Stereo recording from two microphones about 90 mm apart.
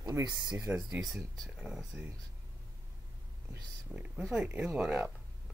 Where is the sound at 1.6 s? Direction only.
10° right (ahead or behind).